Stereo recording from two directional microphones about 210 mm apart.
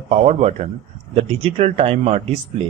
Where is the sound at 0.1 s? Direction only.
30° right (ahead or behind).